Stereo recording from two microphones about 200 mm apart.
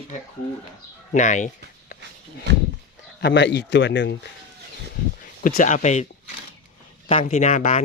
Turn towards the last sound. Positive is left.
turn(degrees=35)  # may be behind; listen again after turning